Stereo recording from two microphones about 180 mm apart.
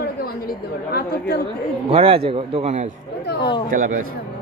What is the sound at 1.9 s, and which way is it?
Speech, 30° right (ahead or behind).